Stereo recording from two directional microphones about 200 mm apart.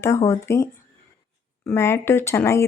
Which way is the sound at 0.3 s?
15° left (ahead or behind).